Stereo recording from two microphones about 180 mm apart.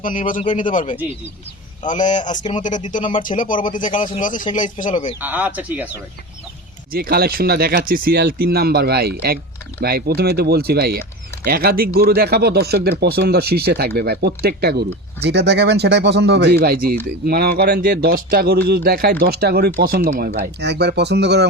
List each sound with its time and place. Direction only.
0.0 s speech: 50° left (ahead or behind)
5.2 s speech: 10° right (ahead or behind)
6.9 s speech: 60° right (ahead or behind)